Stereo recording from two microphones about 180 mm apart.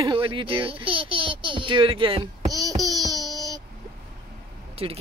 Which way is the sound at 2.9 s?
20° right (ahead or behind).